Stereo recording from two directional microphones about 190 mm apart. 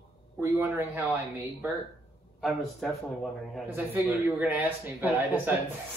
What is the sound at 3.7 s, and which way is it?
Speech, 15° right (ahead or behind).